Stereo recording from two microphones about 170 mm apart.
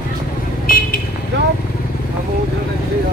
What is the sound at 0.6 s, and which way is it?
Vehicle, 60° left (ahead or behind).